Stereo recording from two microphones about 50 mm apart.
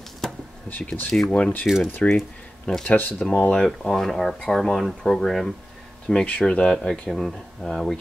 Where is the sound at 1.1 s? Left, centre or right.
Centre.